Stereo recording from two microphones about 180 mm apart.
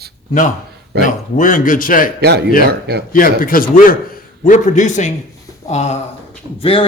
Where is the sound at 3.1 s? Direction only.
50° left (ahead or behind).